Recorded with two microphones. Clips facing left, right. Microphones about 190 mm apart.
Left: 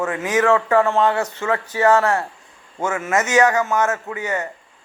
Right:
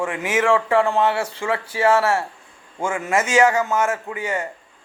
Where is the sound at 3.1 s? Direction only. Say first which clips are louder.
Even; 30° right (ahead or behind).